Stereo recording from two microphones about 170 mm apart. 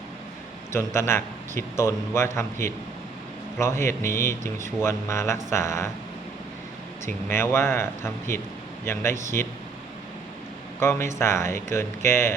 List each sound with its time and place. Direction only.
0.7 s a man's voice: 15° left (ahead or behind)
7.0 s a man's voice: 15° left (ahead or behind)
10.8 s a man's voice: 15° left (ahead or behind)